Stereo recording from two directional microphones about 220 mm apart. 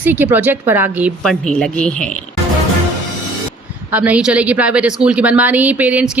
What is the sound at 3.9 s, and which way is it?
A woman's voice, 5° right (ahead or behind).